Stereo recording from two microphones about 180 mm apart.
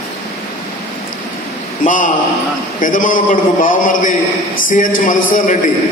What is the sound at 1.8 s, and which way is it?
A man's voice, 45° left (ahead or behind).